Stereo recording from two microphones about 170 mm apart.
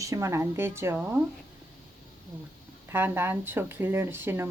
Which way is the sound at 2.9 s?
15° right (ahead or behind).